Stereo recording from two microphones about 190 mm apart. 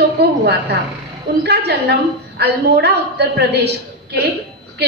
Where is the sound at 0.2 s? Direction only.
65° right (ahead or behind).